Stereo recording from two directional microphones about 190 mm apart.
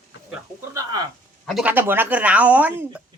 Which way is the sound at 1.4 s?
5° right (ahead or behind).